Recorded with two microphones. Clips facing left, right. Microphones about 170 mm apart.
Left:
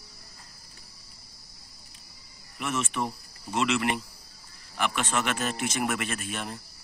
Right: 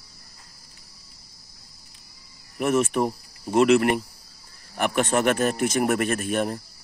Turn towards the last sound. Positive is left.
turn(degrees=-50)  # may be behind; listen again after turning